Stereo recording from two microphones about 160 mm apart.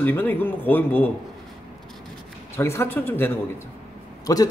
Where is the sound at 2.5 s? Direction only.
15° left (ahead or behind).